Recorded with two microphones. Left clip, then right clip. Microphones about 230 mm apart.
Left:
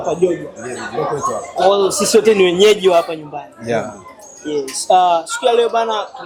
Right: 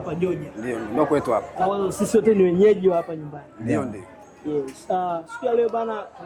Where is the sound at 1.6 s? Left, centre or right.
Left.